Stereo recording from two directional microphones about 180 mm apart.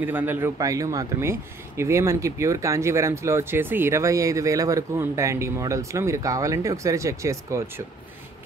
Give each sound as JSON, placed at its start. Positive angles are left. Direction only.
{"t": 0.0, "sound": "speech", "side_deg": -10}